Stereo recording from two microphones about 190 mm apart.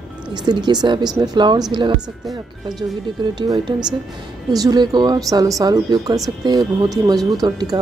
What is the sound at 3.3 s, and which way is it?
Speech, 20° right (ahead or behind).